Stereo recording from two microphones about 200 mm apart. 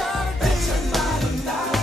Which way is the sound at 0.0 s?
Centre (ahead or behind).